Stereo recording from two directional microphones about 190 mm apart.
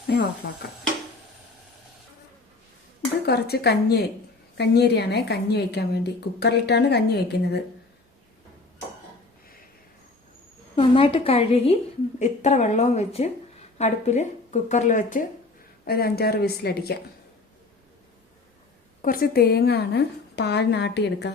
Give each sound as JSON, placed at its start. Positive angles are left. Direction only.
{"t": 3.2, "sound": "a woman's voice", "side_deg": 55}
{"t": 10.8, "sound": "speech", "side_deg": 30}
{"t": 15.8, "sound": "a woman's voice", "side_deg": 55}
{"t": 19.0, "sound": "a woman's voice", "side_deg": 50}